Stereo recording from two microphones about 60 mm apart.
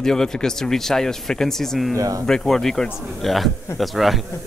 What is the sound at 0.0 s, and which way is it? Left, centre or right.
Speech, centre.